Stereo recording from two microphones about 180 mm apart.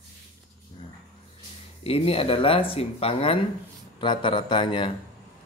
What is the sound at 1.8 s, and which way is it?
Speech, 30° left (ahead or behind).